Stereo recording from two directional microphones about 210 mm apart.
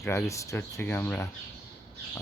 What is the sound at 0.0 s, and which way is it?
Speech, 15° left (ahead or behind).